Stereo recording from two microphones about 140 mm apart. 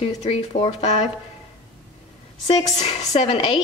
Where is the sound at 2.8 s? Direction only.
55° left (ahead or behind).